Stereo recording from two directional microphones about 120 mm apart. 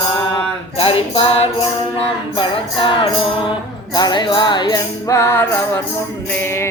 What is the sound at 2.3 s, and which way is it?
Music, 40° left (ahead or behind).